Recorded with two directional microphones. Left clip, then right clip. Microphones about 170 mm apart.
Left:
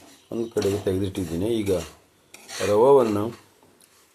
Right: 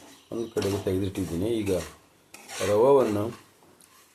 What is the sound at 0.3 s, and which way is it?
Speech, 25° left (ahead or behind).